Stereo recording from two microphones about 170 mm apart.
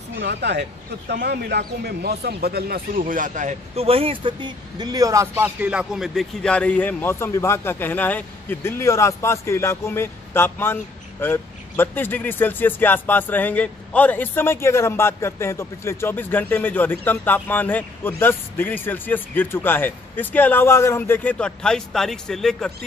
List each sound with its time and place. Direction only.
0.2 s speech: 85° right
1.1 s speech: 70° right (ahead or behind); by 22.7 s 5° left (ahead or behind)